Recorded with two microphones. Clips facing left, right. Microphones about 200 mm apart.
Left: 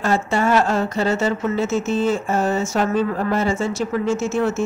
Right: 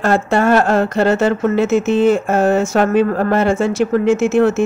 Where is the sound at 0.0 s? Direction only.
60° right (ahead or behind).